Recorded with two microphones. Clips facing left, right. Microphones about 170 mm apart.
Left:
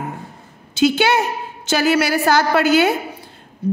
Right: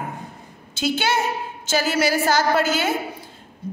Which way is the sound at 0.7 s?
70° left (ahead or behind).